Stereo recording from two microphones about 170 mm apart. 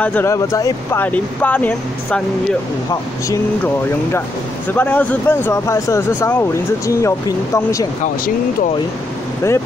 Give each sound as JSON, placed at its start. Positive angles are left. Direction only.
{"t": 0.0, "sound": "speech", "side_deg": 10}
{"t": 4.6, "sound": "speech", "side_deg": 10}